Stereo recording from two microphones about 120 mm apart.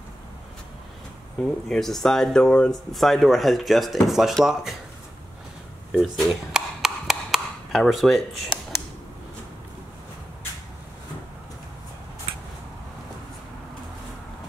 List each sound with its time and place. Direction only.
1.4 s speech: 5° left (ahead or behind)
5.9 s speech: 5° left (ahead or behind)
6.5 s a sound: 5° right (ahead or behind)